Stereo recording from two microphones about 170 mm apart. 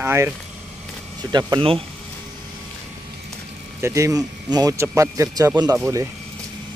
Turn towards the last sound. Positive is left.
turn(degrees=-20)  # may be behind; listen again after turning